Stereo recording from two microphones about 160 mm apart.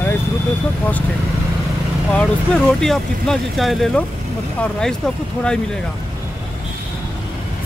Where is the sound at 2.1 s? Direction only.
5° left (ahead or behind).